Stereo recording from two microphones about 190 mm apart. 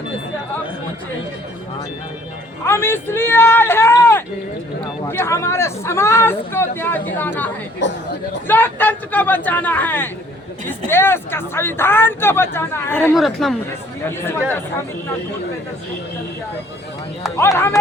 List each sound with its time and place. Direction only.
2.6 s speech: 10° left (ahead or behind)
7.8 s speech: 70° left (ahead or behind)
8.4 s speech: 10° left (ahead or behind)
13.1 s speech: centre (ahead or behind)
17.3 s speech: 15° left (ahead or behind)